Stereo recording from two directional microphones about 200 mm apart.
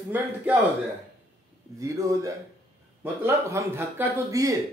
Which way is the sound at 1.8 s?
15° right (ahead or behind).